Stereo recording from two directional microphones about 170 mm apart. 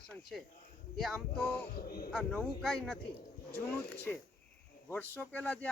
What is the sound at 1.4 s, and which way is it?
Speech, 10° left (ahead or behind).